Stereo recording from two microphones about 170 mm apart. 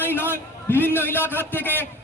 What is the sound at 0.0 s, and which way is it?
A man's voice, 15° left (ahead or behind).